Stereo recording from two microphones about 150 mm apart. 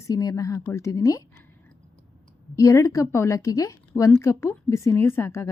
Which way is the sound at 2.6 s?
20° left (ahead or behind).